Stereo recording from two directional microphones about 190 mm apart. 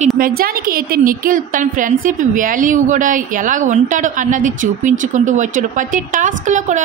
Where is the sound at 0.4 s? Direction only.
50° right (ahead or behind).